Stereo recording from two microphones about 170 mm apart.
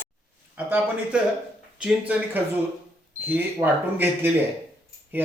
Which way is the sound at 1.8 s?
5° right (ahead or behind).